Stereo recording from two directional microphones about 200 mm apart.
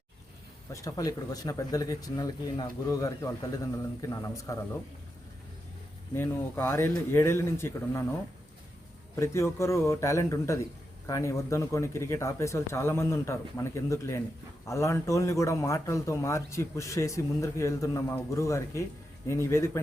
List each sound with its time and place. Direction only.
0.7 s a man's voice: 15° left (ahead or behind)
6.1 s a man's voice: 10° left (ahead or behind)
9.1 s a man's voice: 15° left (ahead or behind)